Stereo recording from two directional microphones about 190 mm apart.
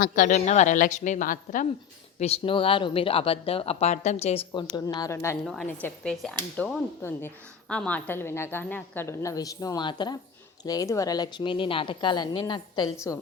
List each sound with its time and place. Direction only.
0.0 s speech: 45° left (ahead or behind)
2.1 s speech: 35° left (ahead or behind)
4.7 s a woman's voice: 20° left (ahead or behind)